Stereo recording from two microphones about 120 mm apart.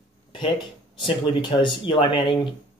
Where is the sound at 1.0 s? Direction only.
40° left (ahead or behind).